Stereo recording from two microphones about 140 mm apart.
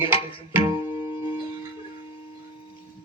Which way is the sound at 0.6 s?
20° right (ahead or behind).